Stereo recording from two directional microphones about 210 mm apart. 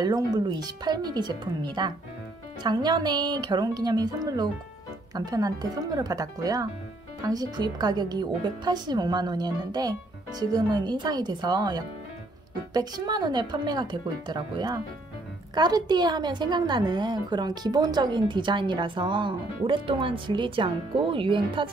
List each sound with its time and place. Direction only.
0.0 s a woman's voice: 20° right (ahead or behind)